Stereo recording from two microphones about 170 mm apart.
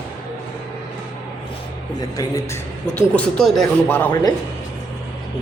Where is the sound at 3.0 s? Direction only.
5° left (ahead or behind).